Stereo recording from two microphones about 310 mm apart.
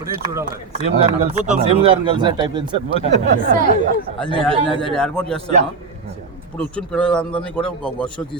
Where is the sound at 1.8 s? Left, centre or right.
Centre.